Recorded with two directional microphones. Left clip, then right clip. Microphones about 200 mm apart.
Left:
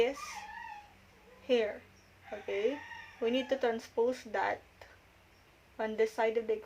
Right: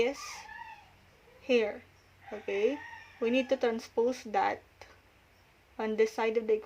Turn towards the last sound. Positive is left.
turn(degrees=-45)  # may be behind; listen again after turning